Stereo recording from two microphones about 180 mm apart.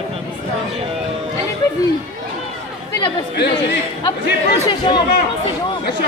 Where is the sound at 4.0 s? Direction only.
25° left (ahead or behind).